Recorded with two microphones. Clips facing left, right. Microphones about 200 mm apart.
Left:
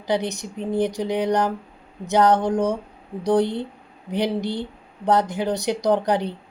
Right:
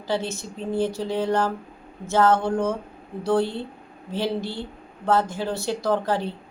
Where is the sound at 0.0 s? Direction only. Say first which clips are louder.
Left 3 dB; 15° left (ahead or behind).